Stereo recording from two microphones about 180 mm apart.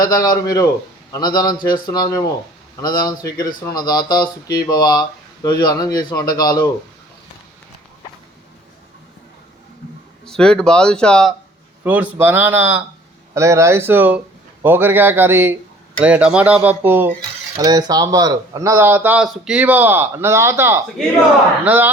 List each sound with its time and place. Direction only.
0.0 s speech: 20° left (ahead or behind)
10.2 s speech: 5° left (ahead or behind)
11.8 s speech: 10° right (ahead or behind)
17.6 s speech: 20° right (ahead or behind)